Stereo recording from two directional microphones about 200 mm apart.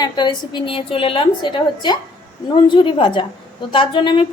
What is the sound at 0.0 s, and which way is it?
A woman's voice, 20° left (ahead or behind).